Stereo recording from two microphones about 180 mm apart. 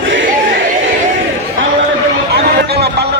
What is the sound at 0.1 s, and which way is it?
Crowd, 90° right.